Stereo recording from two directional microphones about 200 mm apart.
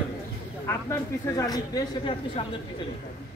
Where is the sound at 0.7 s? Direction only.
15° left (ahead or behind).